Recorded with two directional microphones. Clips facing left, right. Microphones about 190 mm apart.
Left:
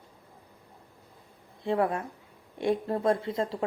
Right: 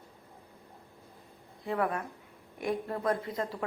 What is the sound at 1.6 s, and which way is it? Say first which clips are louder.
A woman's voice: left 4 dB; 25° left (ahead or behind).